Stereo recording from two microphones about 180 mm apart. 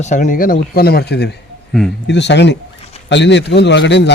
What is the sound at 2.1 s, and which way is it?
A man's voice, 75° left (ahead or behind).